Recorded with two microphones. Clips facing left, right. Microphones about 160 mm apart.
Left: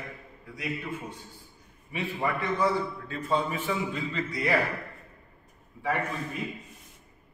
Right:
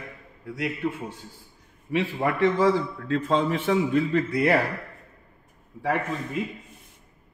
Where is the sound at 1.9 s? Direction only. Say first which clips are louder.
Right 6 dB; 85° right; by 4.5 s 60° right (ahead or behind).